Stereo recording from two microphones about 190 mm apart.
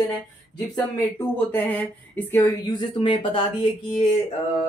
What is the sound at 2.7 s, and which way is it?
Speech, 25° left (ahead or behind).